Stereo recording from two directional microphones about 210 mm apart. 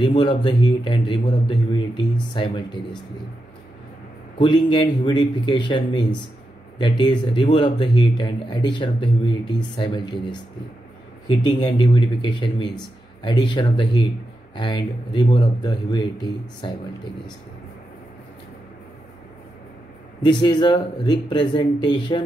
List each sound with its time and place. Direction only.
0.0 s speech: 25° left (ahead or behind)
4.4 s speech: 20° left (ahead or behind)
11.2 s speech: 20° left (ahead or behind)
20.2 s speech: 20° left (ahead or behind)